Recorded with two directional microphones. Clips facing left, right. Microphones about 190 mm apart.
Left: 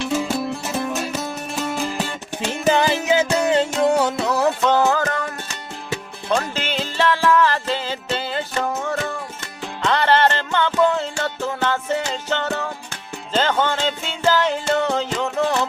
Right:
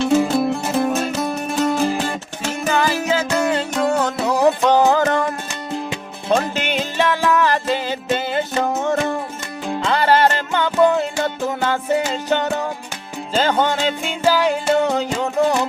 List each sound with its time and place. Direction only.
0.2 s music: 55° right (ahead or behind)
2.6 s music: 25° left (ahead or behind)
4.3 s music: 15° right (ahead or behind)
6.3 s music: 15° right (ahead or behind)
9.8 s music: 10° right (ahead or behind)